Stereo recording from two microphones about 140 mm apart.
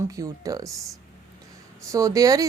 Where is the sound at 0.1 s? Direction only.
25° right (ahead or behind).